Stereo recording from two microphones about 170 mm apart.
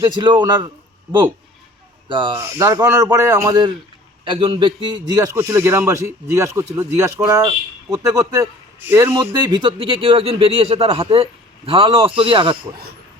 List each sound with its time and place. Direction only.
0.0 s a man's voice: 30° right (ahead or behind)
2.0 s a man's voice: 30° right (ahead or behind)